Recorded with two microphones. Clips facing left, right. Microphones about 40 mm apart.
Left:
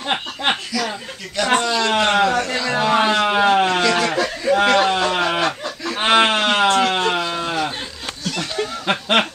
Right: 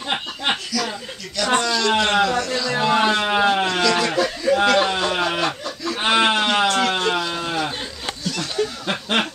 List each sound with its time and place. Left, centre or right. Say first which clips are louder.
0.7 s a sound: left 1 dB; left
5.1 s snicker: left 2 dB; left
6.0 s sheep: left 2 dB; left
6.6 s a sound: left 3 dB; left
7.1 s livestock: left 1 dB; centre
8.3 s snicker: even; left